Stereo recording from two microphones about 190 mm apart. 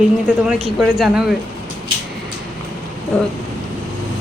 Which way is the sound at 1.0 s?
Centre (ahead or behind).